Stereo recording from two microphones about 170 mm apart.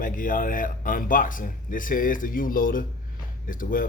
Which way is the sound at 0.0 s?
55° left (ahead or behind).